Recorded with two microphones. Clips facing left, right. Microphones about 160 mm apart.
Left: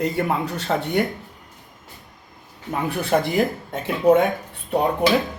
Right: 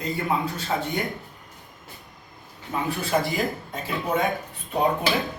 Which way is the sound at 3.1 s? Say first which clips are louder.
Left 4 dB; 55° left (ahead or behind).